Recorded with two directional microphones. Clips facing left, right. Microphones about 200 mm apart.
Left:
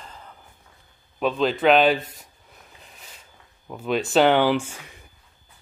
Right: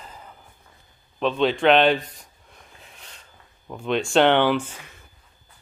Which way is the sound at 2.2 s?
5° left (ahead or behind).